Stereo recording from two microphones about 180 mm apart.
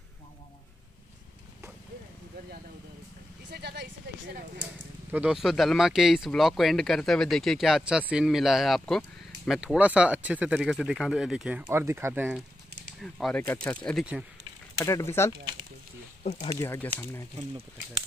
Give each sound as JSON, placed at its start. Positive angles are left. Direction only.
{"t": 3.4, "sound": "speech", "side_deg": -65}
{"t": 5.1, "sound": "speech", "side_deg": -5}
{"t": 13.0, "sound": "speech", "side_deg": 5}
{"t": 14.8, "sound": "speech", "side_deg": 15}
{"t": 16.3, "sound": "speech", "side_deg": 20}